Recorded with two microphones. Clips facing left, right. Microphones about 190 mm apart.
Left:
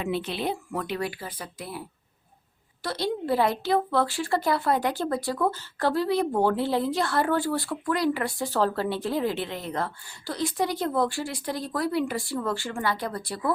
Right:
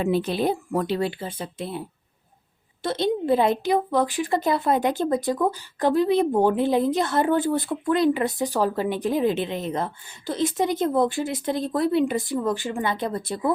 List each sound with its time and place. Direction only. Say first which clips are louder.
0.0 s a woman's voice: right 6 dB; 40° right (ahead or behind)
0.9 s a woman's voice: right 5 dB; 25° right (ahead or behind)
2.8 s a woman's voice: right 5 dB; 20° right (ahead or behind)